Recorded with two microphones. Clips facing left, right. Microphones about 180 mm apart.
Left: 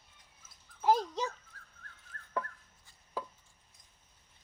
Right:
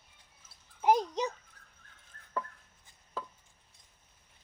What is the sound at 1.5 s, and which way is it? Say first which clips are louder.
Dog: left 4 dB; 20° right (ahead or behind).